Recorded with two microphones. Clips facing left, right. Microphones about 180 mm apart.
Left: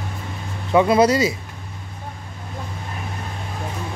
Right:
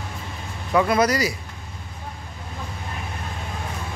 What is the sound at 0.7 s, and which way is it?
Speech, 25° left (ahead or behind).